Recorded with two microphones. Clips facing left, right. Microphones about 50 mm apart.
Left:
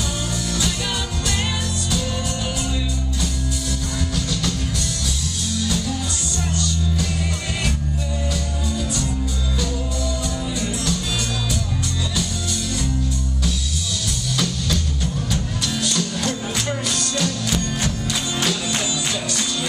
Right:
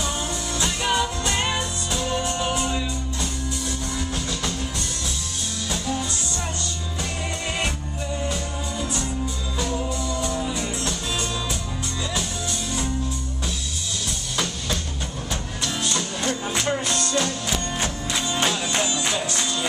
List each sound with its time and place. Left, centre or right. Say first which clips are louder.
0.6 s music: right 5 dB; right
8.3 s music: left 2 dB; right
14.3 s music: left 3 dB; right